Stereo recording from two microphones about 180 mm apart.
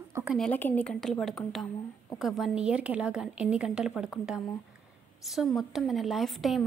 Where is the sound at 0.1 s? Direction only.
10° right (ahead or behind).